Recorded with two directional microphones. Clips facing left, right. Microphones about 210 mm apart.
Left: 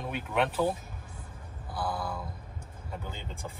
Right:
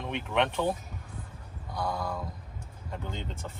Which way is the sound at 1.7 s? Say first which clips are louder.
Right 1 dB; 5° left (ahead or behind).